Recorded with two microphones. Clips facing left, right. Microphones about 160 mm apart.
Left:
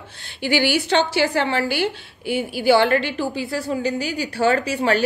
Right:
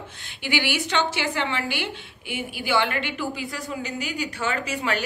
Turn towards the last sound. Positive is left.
turn(degrees=35)  # may be behind; listen again after turning